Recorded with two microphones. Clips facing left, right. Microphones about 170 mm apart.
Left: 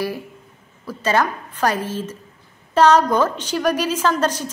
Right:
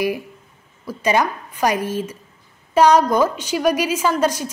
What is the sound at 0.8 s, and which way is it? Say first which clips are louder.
A woman's voice: right 1 dB; 15° right (ahead or behind).